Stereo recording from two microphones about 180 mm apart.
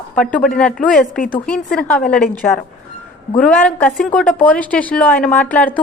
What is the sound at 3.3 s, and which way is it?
A woman's voice, 10° left (ahead or behind).